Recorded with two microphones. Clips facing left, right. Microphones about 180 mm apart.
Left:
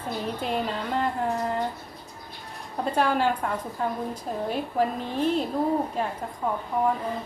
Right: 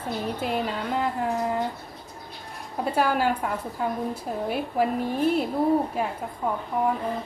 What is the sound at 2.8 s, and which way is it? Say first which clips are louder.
A woman's voice: even; 5° right (ahead or behind).